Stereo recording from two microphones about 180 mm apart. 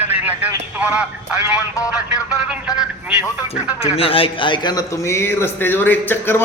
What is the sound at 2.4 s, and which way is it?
Speech, 10° right (ahead or behind).